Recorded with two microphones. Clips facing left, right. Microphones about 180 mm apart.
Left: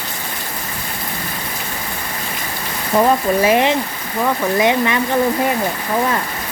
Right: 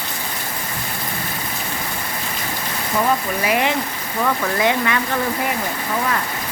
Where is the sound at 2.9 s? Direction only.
30° left (ahead or behind).